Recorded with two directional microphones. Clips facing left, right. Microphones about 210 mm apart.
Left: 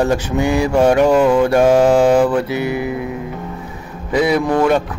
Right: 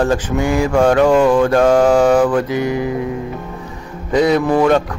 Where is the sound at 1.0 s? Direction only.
5° left (ahead or behind).